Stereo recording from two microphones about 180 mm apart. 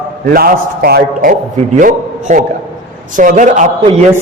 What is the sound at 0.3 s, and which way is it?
Speech, 55° right (ahead or behind).